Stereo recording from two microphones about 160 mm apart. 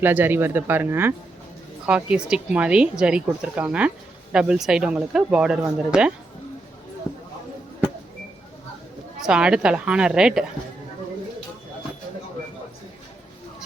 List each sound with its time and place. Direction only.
0.0 s speech: 10° right (ahead or behind)
9.2 s speech: 5° right (ahead or behind)